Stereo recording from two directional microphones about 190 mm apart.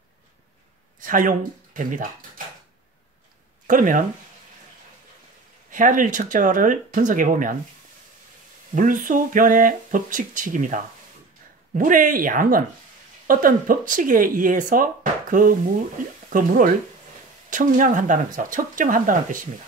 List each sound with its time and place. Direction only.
0.9 s speech: 45° right (ahead or behind)
3.6 s speech: 45° right (ahead or behind)
5.7 s speech: 45° right (ahead or behind)
8.7 s speech: 45° right (ahead or behind)